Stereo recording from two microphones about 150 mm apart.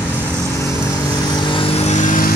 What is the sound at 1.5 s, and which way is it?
Vehicle, 40° left (ahead or behind).